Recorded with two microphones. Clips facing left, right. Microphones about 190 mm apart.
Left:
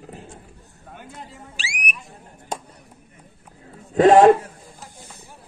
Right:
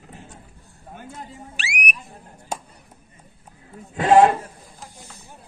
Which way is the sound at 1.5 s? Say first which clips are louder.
Right 3 dB; 60° right (ahead or behind).